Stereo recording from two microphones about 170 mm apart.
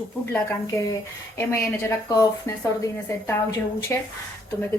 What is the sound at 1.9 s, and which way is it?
A woman's voice, 20° left (ahead or behind).